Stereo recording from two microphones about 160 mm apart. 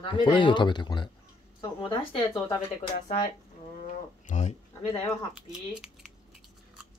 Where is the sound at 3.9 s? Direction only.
50° left (ahead or behind).